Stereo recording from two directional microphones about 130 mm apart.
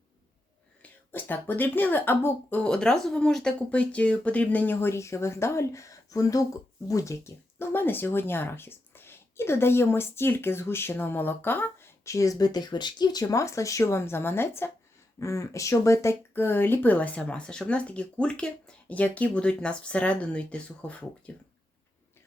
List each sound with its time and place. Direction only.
0.8 s speech: 15° left (ahead or behind)